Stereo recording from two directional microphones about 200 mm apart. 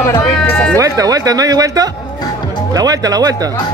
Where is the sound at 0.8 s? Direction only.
15° right (ahead or behind).